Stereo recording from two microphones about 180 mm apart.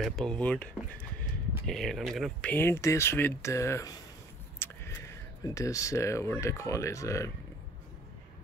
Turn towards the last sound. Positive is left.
turn(degrees=15)  # may be behind; listen again after turning